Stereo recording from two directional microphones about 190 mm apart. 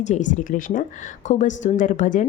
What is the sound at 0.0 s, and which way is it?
A woman's voice, 40° left (ahead or behind).